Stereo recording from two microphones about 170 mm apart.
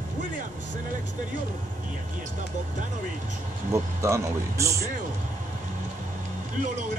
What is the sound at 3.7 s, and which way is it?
A man's voice, 15° right (ahead or behind).